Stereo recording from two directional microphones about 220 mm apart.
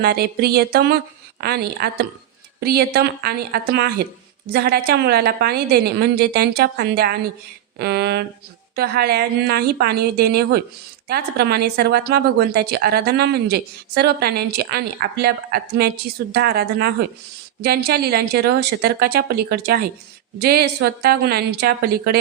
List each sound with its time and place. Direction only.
0.0 s a woman's voice: 45° right (ahead or behind)